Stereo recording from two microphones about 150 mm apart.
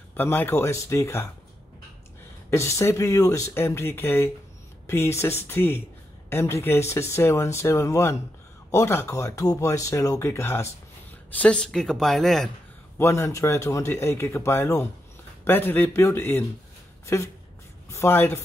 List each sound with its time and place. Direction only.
0.1 s speech: 15° left (ahead or behind)
2.5 s speech: 20° left (ahead or behind)
11.3 s speech: 5° left (ahead or behind)
12.9 s speech: 20° left (ahead or behind)